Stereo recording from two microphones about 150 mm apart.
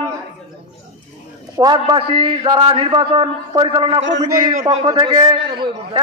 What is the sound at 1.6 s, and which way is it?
A man's voice, 30° right (ahead or behind).